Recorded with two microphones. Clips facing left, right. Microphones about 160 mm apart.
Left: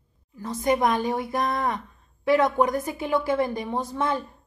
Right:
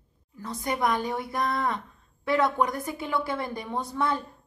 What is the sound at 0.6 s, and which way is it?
A woman's voice, 20° left (ahead or behind).